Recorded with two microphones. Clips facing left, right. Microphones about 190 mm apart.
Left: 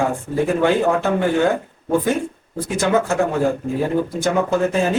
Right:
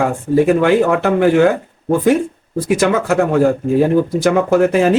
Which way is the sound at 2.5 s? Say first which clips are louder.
Right 4 dB; 80° right.